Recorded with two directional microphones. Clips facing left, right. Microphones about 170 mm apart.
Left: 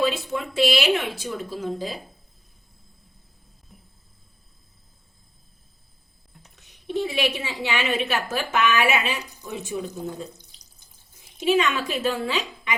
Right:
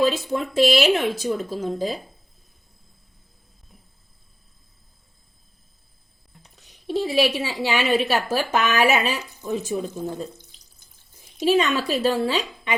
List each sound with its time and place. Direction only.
0.0 s speech: 40° right (ahead or behind)
6.8 s a woman's voice: 35° right (ahead or behind)
11.3 s a woman's voice: 35° right (ahead or behind)